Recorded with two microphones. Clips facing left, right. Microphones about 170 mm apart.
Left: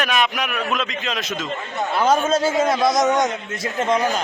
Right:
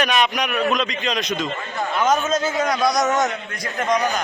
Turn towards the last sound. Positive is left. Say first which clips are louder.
# left 1 dB
turn(degrees=25)  # may be behind; listen again after turning